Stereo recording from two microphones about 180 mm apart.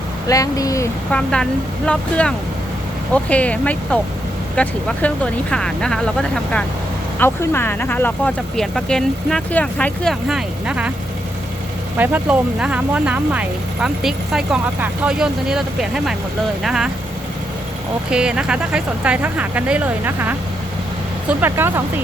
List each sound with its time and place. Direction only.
0.3 s speech: 20° left (ahead or behind)
1.1 s speech: 5° left (ahead or behind)
11.9 s speech: 10° right (ahead or behind)
18.1 s speech: 5° right (ahead or behind)